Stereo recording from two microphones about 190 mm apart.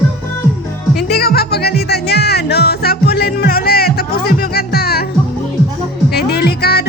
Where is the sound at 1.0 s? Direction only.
55° left (ahead or behind).